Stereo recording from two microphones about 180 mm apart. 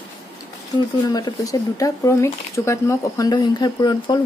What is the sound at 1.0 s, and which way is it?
Speech, 20° left (ahead or behind).